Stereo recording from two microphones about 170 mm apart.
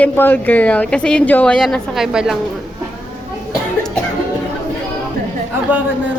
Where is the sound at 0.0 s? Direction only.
10° left (ahead or behind).